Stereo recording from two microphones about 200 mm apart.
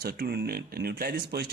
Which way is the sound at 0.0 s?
50° right (ahead or behind).